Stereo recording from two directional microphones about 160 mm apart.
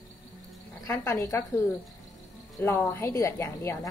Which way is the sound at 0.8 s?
20° left (ahead or behind).